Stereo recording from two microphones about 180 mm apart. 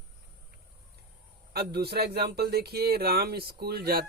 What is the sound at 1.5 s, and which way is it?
Speech, 60° right (ahead or behind).